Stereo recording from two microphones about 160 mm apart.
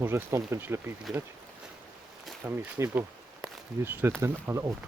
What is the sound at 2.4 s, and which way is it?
Speech, 15° right (ahead or behind).